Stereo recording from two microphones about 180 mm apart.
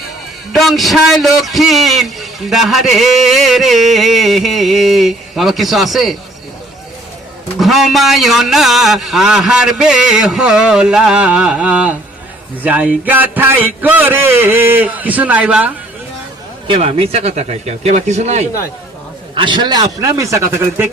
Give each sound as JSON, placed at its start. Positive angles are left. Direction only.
{"t": 0.5, "sound": "a man's voice", "side_deg": 0}
{"t": 7.6, "sound": "a man's voice", "side_deg": 0}
{"t": 16.6, "sound": "speech", "side_deg": -30}
{"t": 19.3, "sound": "a man's voice", "side_deg": -25}